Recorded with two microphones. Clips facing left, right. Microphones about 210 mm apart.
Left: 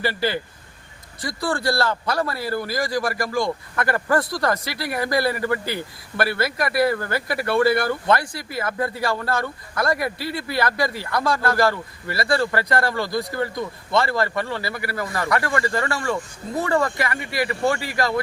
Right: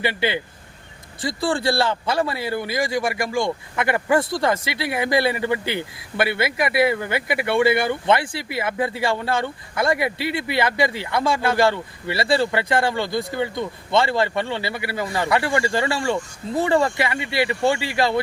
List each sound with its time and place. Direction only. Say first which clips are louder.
0.0 s speech: right 1 dB; 20° right (ahead or behind)